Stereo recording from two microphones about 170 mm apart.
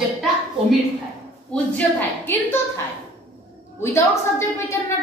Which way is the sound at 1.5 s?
10° left (ahead or behind).